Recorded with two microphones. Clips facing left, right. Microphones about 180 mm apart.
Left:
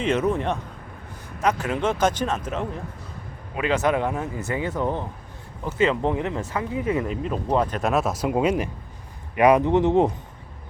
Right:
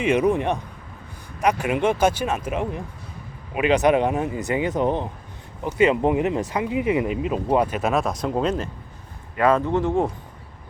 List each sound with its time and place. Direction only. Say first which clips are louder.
0.0 s speech: right 3 dB; 15° right (ahead or behind); by 10.1 s 20° left (ahead or behind)